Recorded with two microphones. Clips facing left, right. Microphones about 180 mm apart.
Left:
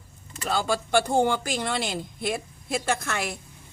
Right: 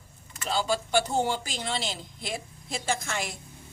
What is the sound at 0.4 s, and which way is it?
A woman's voice, 55° left (ahead or behind).